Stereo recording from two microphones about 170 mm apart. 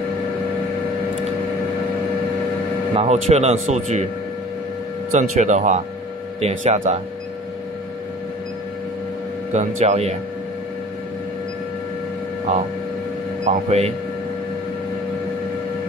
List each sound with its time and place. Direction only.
2.9 s speech: 40° right (ahead or behind)
5.1 s speech: 45° right (ahead or behind)
9.5 s speech: 45° right (ahead or behind)
13.5 s speech: 40° right (ahead or behind)